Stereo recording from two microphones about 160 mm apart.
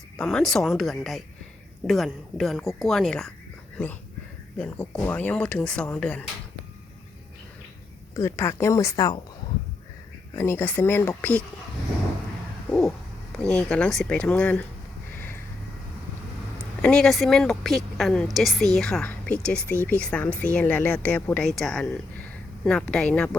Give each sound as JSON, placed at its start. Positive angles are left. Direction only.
{"t": 0.2, "sound": "a woman's voice", "side_deg": 5}
{"t": 4.5, "sound": "a woman's voice", "side_deg": 5}
{"t": 8.1, "sound": "speech", "side_deg": 15}
{"t": 10.3, "sound": "speech", "side_deg": 15}
{"t": 13.4, "sound": "a woman's voice", "side_deg": 5}
{"t": 16.8, "sound": "a woman's voice", "side_deg": 5}